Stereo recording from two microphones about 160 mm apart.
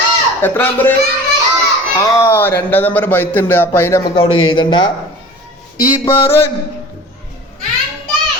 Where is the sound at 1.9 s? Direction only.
20° left (ahead or behind).